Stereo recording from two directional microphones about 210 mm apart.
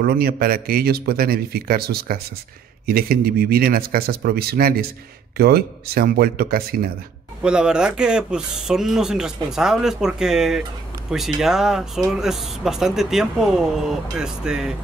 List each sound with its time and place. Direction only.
0.0 s speech: 45° right (ahead or behind)
7.4 s speech: 5° right (ahead or behind)